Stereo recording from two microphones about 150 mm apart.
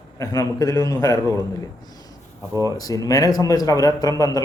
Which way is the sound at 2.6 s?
25° left (ahead or behind).